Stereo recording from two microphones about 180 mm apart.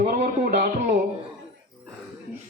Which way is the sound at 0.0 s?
55° right (ahead or behind).